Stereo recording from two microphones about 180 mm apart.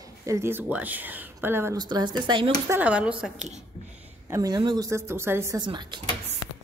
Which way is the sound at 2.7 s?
10° right (ahead or behind).